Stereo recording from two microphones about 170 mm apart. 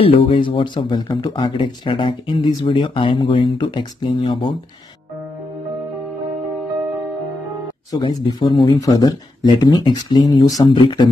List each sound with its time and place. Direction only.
0.0 s speech: 30° left (ahead or behind)
7.9 s speech: 25° left (ahead or behind)